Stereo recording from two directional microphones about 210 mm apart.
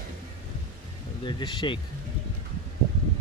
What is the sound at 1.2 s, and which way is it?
Speech, 20° left (ahead or behind).